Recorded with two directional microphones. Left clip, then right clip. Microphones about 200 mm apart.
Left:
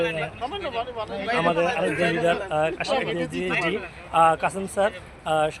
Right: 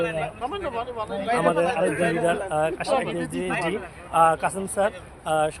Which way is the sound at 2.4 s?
10° left (ahead or behind).